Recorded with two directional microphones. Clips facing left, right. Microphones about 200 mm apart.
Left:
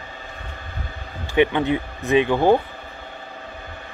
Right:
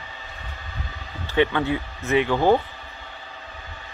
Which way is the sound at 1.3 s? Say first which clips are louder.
Left 3 dB; 20° left (ahead or behind).